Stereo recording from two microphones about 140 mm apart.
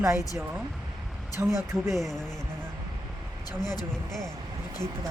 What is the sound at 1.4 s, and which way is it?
Speech, 15° right (ahead or behind).